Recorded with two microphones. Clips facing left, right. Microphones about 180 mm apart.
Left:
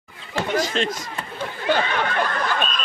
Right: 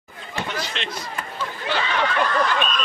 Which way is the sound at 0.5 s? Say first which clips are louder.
Left 12 dB; 45° left (ahead or behind).